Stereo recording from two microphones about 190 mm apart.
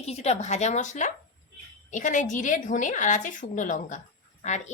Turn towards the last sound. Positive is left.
turn(degrees=40)  # may be behind; listen again after turning